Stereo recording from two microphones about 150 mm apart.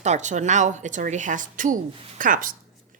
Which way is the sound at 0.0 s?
50° right (ahead or behind).